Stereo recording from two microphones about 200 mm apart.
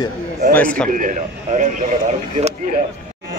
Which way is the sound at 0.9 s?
40° right (ahead or behind).